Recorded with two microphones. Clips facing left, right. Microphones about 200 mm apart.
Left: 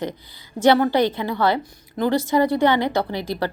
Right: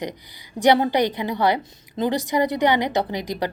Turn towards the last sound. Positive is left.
turn(degrees=-15)  # may be behind; listen again after turning